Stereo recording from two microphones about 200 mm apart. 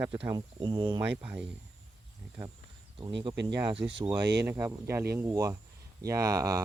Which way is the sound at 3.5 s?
20° right (ahead or behind).